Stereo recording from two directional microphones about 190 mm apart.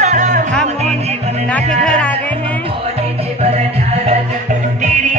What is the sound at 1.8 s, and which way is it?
Speech, 5° left (ahead or behind).